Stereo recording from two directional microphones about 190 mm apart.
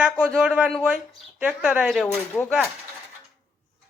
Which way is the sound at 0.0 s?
5° right (ahead or behind).